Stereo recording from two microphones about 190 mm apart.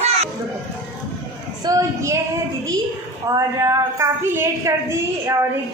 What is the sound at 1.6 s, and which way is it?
Speech, 20° right (ahead or behind).